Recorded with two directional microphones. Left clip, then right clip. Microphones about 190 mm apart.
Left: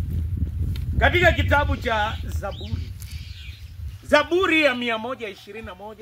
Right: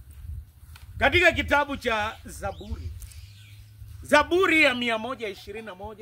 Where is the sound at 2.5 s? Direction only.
70° right (ahead or behind).